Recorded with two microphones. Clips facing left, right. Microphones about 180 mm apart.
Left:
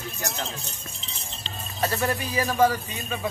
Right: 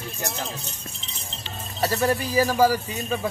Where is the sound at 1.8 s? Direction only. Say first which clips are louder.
Right 3 dB; 35° right (ahead or behind).